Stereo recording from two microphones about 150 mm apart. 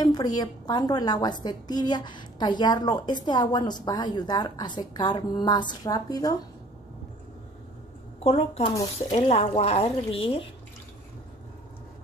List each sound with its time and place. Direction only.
0.0 s a woman's voice: 30° left (ahead or behind)
8.2 s speech: 40° left (ahead or behind)